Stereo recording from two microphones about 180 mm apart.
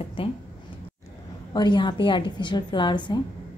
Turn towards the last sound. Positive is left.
turn(degrees=25)  # may be behind; listen again after turning